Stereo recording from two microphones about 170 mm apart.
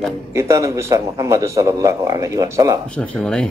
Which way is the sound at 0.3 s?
15° right (ahead or behind).